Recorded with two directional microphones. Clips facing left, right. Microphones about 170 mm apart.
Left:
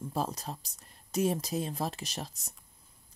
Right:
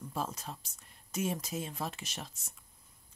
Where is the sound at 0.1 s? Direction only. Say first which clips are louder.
Left 4 dB; 35° left (ahead or behind).